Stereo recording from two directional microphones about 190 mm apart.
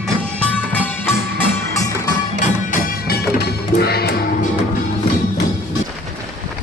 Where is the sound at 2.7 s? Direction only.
55° left (ahead or behind).